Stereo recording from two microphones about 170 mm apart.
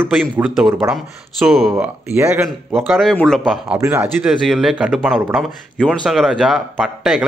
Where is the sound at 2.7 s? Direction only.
Centre (ahead or behind).